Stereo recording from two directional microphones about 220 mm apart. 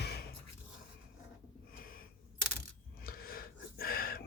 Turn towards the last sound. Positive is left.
turn(degrees=40)  # may be behind; listen again after turning